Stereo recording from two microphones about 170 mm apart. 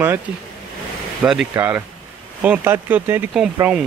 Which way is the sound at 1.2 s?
5° right (ahead or behind).